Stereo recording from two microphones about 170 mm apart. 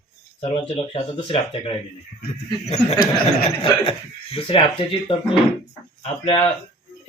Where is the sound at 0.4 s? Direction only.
35° left (ahead or behind).